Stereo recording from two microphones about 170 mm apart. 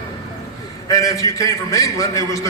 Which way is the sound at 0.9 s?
20° left (ahead or behind).